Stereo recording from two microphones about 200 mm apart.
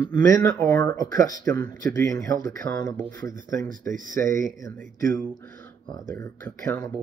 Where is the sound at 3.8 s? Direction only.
10° left (ahead or behind).